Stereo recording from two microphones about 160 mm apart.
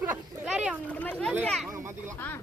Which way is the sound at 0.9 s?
10° left (ahead or behind).